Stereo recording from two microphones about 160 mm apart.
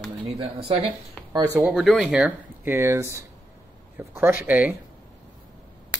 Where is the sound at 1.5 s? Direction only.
5° right (ahead or behind).